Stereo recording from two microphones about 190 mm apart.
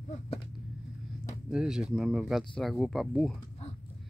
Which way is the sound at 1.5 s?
5° right (ahead or behind).